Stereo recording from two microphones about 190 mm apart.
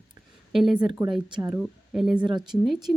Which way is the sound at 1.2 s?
25° right (ahead or behind).